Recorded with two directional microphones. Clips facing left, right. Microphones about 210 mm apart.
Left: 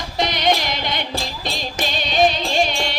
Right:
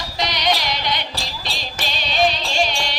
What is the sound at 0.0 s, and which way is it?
Music, 50° left (ahead or behind).